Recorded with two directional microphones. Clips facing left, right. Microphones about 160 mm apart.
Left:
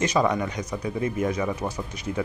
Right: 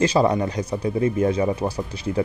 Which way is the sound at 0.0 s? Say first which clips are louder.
Right 4 dB; 30° right (ahead or behind).